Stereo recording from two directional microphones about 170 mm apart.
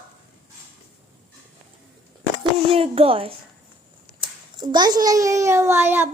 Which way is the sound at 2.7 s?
35° right (ahead or behind).